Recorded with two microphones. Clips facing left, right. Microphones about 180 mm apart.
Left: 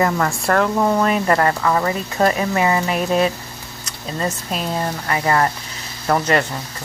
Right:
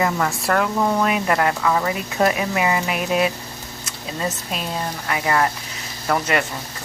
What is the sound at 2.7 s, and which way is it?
Speech, 35° left (ahead or behind).